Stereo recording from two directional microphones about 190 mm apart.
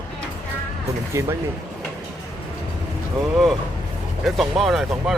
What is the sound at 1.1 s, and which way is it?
Speech, 15° right (ahead or behind).